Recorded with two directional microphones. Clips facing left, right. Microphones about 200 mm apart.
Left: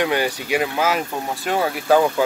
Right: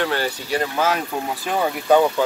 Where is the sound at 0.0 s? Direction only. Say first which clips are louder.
Left 2 dB; 15° left (ahead or behind).